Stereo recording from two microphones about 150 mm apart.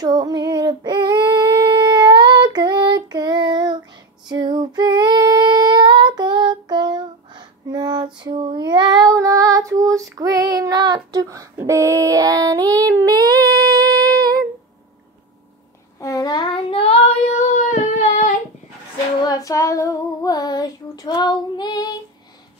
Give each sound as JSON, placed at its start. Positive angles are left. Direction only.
{"t": 0.0, "sound": "child singing", "side_deg": -25}
{"t": 4.3, "sound": "female singing", "side_deg": -30}
{"t": 16.0, "sound": "child singing", "side_deg": 25}
{"t": 17.5, "sound": "child singing", "side_deg": 55}
{"t": 19.2, "sound": "child singing", "side_deg": 20}